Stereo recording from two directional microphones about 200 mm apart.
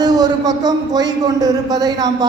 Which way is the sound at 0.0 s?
20° right (ahead or behind).